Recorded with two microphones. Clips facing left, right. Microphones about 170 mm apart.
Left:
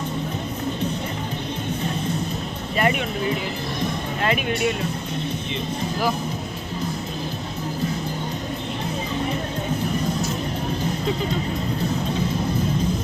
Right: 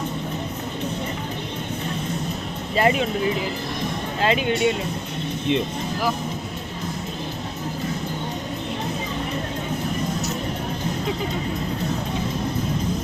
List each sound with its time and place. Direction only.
2.7 s vehicle: 30° right (ahead or behind)
4.2 s speech: 25° right (ahead or behind)